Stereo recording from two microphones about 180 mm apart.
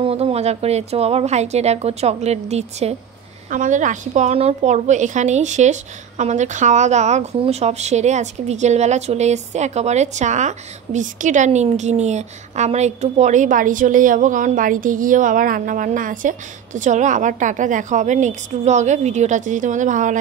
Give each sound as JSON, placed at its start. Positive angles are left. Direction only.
{"t": 0.0, "sound": "a woman's voice", "side_deg": -35}